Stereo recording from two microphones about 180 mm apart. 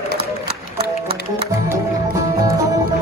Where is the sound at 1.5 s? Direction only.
20° right (ahead or behind).